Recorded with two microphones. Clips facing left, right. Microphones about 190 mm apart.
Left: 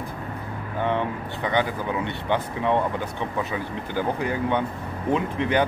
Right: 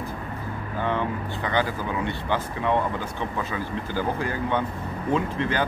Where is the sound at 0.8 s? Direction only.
20° left (ahead or behind).